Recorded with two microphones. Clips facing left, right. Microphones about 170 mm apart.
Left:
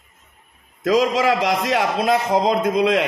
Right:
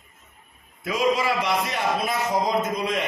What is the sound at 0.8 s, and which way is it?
A man's voice, 90° left.